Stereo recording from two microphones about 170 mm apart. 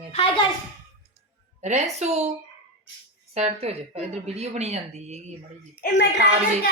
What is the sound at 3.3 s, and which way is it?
A woman's voice, 35° right (ahead or behind).